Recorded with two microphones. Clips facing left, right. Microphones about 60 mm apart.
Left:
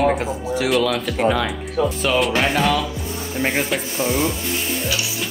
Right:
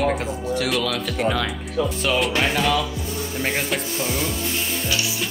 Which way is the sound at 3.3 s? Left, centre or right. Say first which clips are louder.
Left 4 dB; centre.